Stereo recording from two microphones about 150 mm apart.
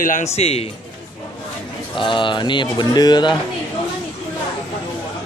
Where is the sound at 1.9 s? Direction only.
35° left (ahead or behind).